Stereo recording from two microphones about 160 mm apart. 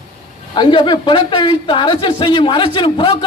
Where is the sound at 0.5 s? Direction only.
30° left (ahead or behind).